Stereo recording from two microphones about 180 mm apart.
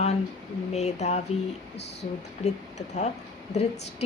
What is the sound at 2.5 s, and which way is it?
Speech, 40° left (ahead or behind).